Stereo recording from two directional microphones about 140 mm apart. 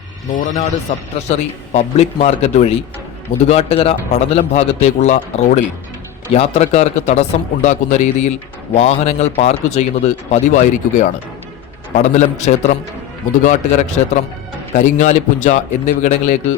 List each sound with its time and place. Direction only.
0.3 s a man's voice: 65° left (ahead or behind)
1.3 s a man's voice: 50° left (ahead or behind)
6.3 s a man's voice: 50° left (ahead or behind)